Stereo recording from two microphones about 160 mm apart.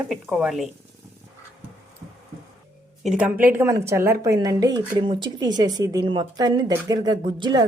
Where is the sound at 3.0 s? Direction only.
5° right (ahead or behind); by 7.6 s 30° right (ahead or behind).